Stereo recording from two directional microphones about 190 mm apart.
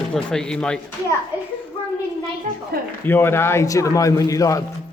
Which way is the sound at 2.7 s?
55° right (ahead or behind).